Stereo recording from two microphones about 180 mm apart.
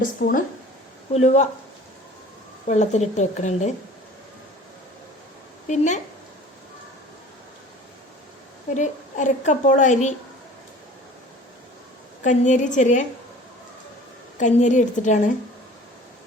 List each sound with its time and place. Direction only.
0.0 s a woman's voice: 50° left (ahead or behind)
1.1 s a woman's voice: 40° left (ahead or behind)
2.6 s a woman's voice: 40° left (ahead or behind)
5.6 s a woman's voice: 40° left (ahead or behind)
8.7 s a woman's voice: 40° left (ahead or behind)
12.2 s a woman's voice: 45° left (ahead or behind)
14.3 s a woman's voice: 40° left (ahead or behind)